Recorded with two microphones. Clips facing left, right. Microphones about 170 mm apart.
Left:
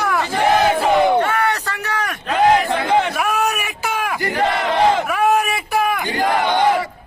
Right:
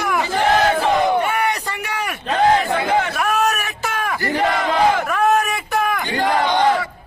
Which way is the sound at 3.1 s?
5° left (ahead or behind).